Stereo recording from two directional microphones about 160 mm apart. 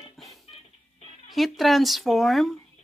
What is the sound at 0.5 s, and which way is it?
Music, 35° left (ahead or behind).